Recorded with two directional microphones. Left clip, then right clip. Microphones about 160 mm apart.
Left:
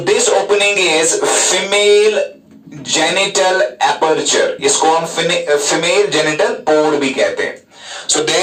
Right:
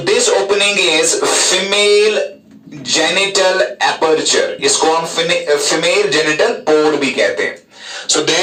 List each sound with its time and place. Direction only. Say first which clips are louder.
0.0 s speech: even; 5° left (ahead or behind)
8.0 s speech: right 1 dB; 20° left (ahead or behind)